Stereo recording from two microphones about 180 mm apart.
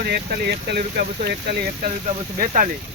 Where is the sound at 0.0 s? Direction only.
60° right (ahead or behind).